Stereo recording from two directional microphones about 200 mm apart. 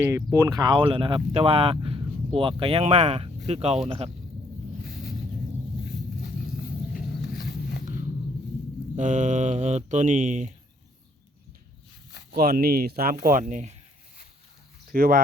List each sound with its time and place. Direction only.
0.0 s speech: 10° right (ahead or behind); by 4.1 s 30° right (ahead or behind)
6.9 s a sound: 50° left (ahead or behind)
9.0 s speech: 40° right (ahead or behind)
12.3 s speech: 50° right (ahead or behind)
13.5 s speech: 40° right (ahead or behind)
14.9 s speech: 45° right (ahead or behind)